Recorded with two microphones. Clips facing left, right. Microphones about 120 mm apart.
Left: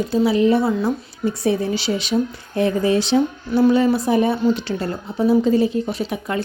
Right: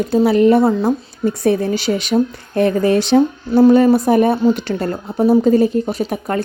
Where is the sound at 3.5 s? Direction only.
40° right (ahead or behind).